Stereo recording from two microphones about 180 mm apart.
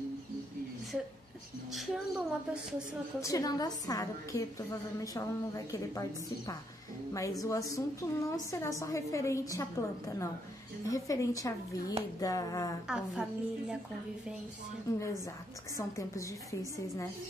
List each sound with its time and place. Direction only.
1.7 s a woman's voice: centre (ahead or behind)
3.2 s a woman's voice: 20° left (ahead or behind)
12.8 s a woman's voice: 5° right (ahead or behind)
14.9 s a woman's voice: 15° left (ahead or behind)